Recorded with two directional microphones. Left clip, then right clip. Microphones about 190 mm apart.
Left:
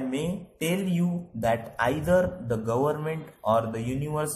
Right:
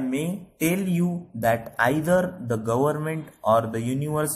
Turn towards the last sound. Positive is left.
turn(degrees=-20)  # may be behind; listen again after turning